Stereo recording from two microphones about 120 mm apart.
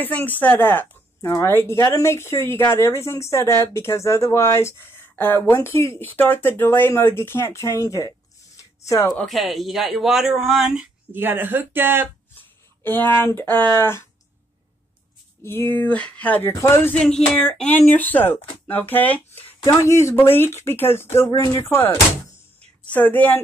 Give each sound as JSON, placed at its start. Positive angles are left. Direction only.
{"t": 0.0, "sound": "speech", "side_deg": 15}
{"t": 8.5, "sound": "a sound", "side_deg": 25}
{"t": 9.1, "sound": "speech", "side_deg": 5}
{"t": 11.1, "sound": "speech", "side_deg": -15}
{"t": 12.4, "sound": "speech", "side_deg": 15}
{"t": 15.4, "sound": "speech", "side_deg": 20}
{"t": 16.5, "sound": "speech", "side_deg": 25}
{"t": 16.9, "sound": "speech", "side_deg": 5}
{"t": 19.6, "sound": "speech", "side_deg": 25}
{"t": 22.9, "sound": "speech", "side_deg": 15}